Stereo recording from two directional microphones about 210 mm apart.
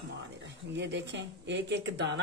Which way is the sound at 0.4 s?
55° right (ahead or behind).